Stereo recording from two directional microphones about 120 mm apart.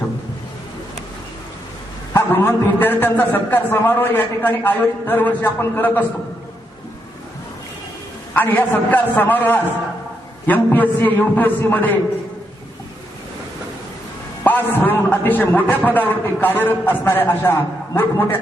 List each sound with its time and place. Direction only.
2.1 s a man's voice: 20° left (ahead or behind)
8.3 s a man's voice: 15° left (ahead or behind)
14.4 s a man's voice: 15° left (ahead or behind)